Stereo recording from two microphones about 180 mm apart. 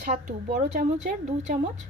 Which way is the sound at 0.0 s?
45° right (ahead or behind).